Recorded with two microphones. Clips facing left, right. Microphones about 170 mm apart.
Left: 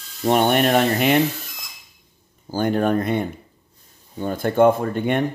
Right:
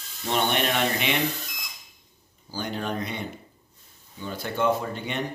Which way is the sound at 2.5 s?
50° left (ahead or behind).